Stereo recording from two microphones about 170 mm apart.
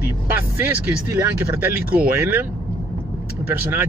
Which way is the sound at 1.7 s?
15° right (ahead or behind).